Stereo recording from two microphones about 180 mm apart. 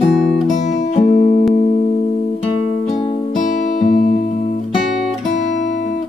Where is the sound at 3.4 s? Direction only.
45° left (ahead or behind).